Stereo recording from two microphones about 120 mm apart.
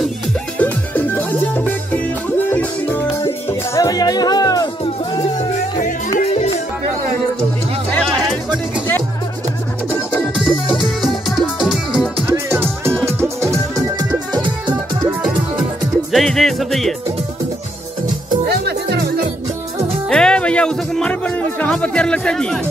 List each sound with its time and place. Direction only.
0.6 s music: 15° left (ahead or behind)
3.4 s music: 30° left (ahead or behind)
5.4 s music: 90° left
6.1 s music: 70° left (ahead or behind)
11.0 s music: centre (ahead or behind)
12.3 s music: 20° right (ahead or behind)
13.7 s music: 30° right (ahead or behind)
16.1 s music: centre (ahead or behind)
20.1 s speech: 5° left (ahead or behind)